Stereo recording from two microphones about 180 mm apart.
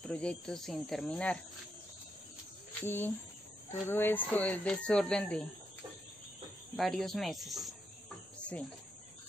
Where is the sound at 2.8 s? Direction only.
10° left (ahead or behind).